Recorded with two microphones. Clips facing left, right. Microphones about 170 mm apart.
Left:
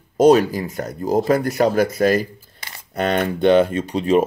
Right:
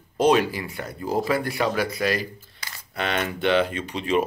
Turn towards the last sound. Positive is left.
turn(degrees=45)  # may be behind; listen again after turning